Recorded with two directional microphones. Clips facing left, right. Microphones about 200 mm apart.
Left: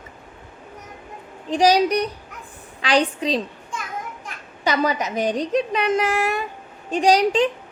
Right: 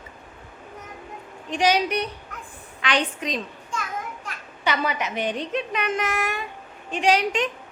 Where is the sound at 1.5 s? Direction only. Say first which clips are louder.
Left 5 dB; 35° left (ahead or behind).